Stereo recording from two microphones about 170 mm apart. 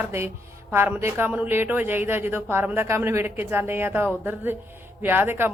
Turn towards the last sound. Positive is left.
turn(degrees=-15)  # may be behind; listen again after turning